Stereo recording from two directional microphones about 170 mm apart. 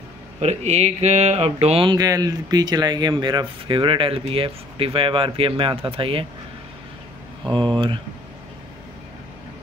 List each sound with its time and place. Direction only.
0.4 s speech: 40° right (ahead or behind)
7.4 s speech: 30° right (ahead or behind)